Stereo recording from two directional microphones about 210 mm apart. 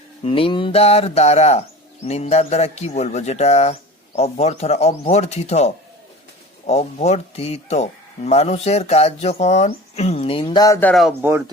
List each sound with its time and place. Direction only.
0.3 s speech: 25° left (ahead or behind); by 11.1 s 5° left (ahead or behind)
11.2 s speech: 10° right (ahead or behind)